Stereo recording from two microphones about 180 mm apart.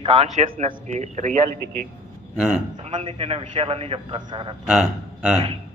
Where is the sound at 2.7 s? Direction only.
35° right (ahead or behind).